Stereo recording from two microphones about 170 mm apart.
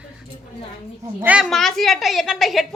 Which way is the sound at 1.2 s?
10° right (ahead or behind).